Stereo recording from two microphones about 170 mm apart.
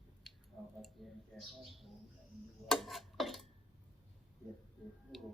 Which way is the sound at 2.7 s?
Centre (ahead or behind).